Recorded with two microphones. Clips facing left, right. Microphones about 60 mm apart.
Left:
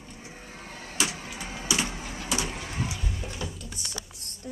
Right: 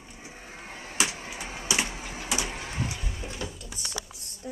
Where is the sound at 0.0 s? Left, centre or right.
Centre.